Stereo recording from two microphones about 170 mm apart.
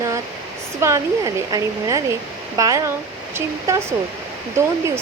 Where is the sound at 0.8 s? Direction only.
15° right (ahead or behind).